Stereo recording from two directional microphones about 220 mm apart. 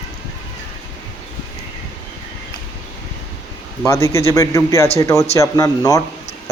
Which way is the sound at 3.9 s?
15° left (ahead or behind).